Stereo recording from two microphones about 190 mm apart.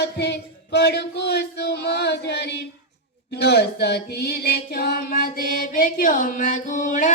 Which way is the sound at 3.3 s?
60° left (ahead or behind).